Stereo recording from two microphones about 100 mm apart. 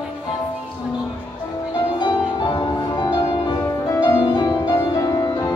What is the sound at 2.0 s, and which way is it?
Music, 45° left (ahead or behind).